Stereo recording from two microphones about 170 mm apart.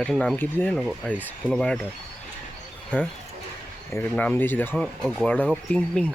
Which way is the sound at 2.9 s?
10° left (ahead or behind).